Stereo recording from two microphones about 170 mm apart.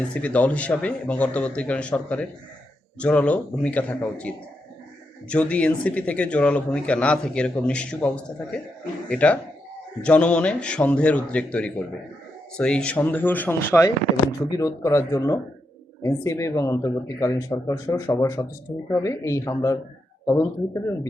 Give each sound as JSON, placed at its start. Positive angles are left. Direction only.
{"t": 0.1, "sound": "speech", "side_deg": 10}